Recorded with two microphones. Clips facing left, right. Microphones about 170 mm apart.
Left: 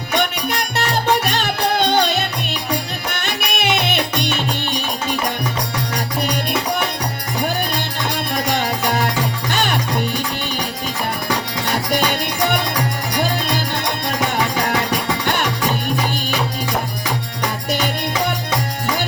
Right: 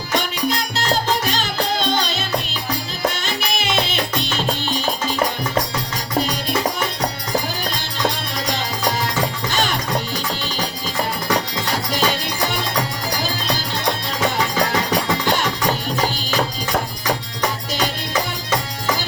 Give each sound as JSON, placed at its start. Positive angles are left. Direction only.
{"t": 0.2, "sound": "music", "side_deg": 65}
{"t": 8.4, "sound": "music", "side_deg": 60}